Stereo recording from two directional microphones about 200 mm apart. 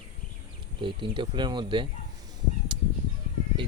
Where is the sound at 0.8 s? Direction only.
25° right (ahead or behind).